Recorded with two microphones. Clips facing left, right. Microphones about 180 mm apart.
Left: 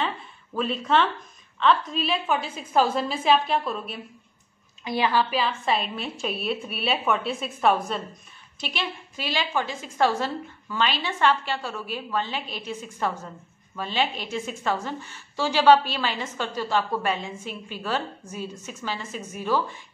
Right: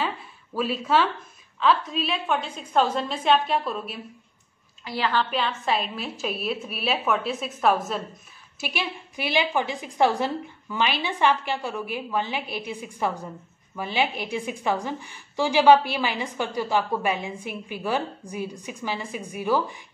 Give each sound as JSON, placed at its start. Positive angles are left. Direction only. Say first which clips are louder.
{"t": 0.6, "sound": "a woman's voice", "louder": "even", "side_deg": -5}
{"t": 4.8, "sound": "a woman's voice", "louder": "left 2 dB", "side_deg": 15}
{"t": 5.3, "sound": "a woman's voice", "louder": "left 1 dB", "side_deg": 0}